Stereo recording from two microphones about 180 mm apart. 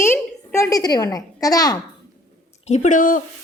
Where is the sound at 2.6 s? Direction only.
40° left (ahead or behind).